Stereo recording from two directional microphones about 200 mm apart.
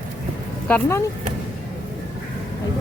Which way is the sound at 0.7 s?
15° left (ahead or behind).